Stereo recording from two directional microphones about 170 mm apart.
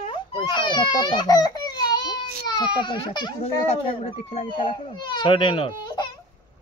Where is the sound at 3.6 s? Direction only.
40° left (ahead or behind).